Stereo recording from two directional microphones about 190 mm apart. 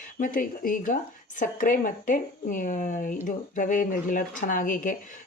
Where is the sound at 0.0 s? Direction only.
45° left (ahead or behind).